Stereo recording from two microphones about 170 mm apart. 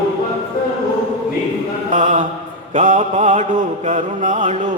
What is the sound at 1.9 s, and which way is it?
Mantra, 50° right (ahead or behind).